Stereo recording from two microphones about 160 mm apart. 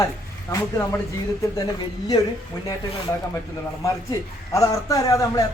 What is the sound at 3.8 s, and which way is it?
A man's voice, 20° left (ahead or behind).